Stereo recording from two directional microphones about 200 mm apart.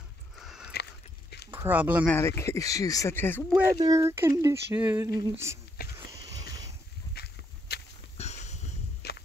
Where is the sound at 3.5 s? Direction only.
15° right (ahead or behind).